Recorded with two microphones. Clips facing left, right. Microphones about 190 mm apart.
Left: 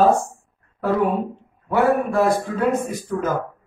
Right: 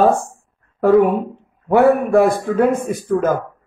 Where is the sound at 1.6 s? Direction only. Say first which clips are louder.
Right 5 dB; 55° right (ahead or behind).